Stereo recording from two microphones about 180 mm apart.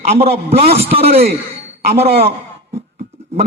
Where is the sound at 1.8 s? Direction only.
60° right (ahead or behind).